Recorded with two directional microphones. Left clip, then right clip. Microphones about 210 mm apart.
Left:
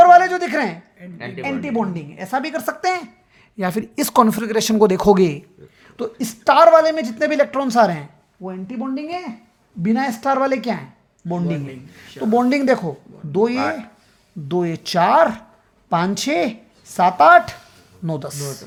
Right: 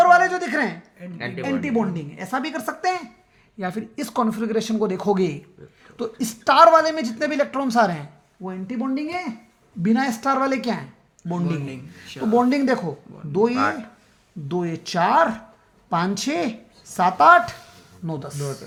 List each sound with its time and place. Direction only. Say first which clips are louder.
0.0 s a sound: left 5 dB; 30° left (ahead or behind)
1.0 s speech: right 1 dB; 30° right (ahead or behind)
1.6 s a woman's voice: left 1 dB; 25° left (ahead or behind)
3.6 s speech: left 7 dB; 55° left (ahead or behind)
6.0 s a woman's voice: left 2 dB; 30° left (ahead or behind)
8.4 s speech: even; 15° left (ahead or behind)
9.8 s a woman's voice: left 2 dB; 25° left (ahead or behind); by 18.6 s 40° left (ahead or behind)